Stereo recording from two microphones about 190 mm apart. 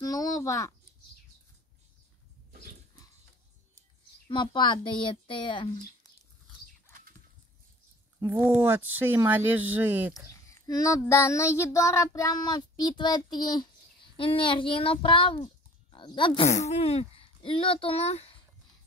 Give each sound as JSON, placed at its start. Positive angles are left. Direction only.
{"t": 0.0, "sound": "a sound", "side_deg": 20}
{"t": 4.3, "sound": "a woman's voice", "side_deg": 25}
{"t": 8.2, "sound": "speech", "side_deg": -10}
{"t": 10.1, "sound": "a child's voice", "side_deg": 15}